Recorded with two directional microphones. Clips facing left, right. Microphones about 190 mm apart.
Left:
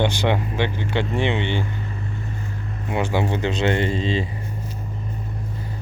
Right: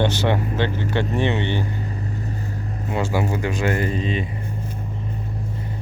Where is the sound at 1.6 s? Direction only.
35° right (ahead or behind).